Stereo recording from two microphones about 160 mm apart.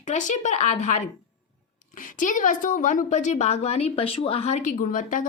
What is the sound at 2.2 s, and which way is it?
A woman's voice, 55° left (ahead or behind).